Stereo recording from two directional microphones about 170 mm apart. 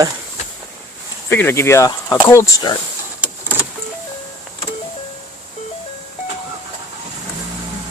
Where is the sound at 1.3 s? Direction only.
15° left (ahead or behind).